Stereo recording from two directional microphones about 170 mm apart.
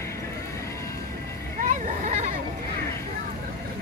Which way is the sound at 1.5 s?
50° right (ahead or behind).